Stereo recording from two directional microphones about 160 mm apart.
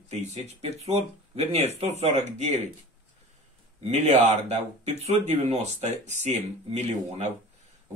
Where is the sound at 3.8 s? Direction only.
45° right (ahead or behind).